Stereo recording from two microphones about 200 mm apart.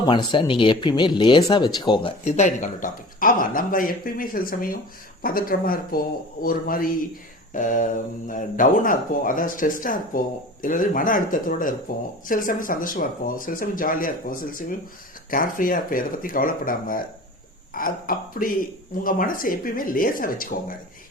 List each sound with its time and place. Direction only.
0.0 s speech: 20° left (ahead or behind); by 20.7 s 45° left (ahead or behind)